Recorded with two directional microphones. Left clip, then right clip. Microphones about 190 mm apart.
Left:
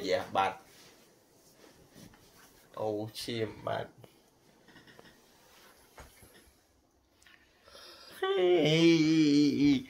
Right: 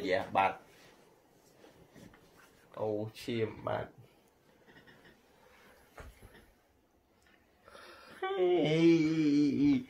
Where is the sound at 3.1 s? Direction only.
40° right (ahead or behind).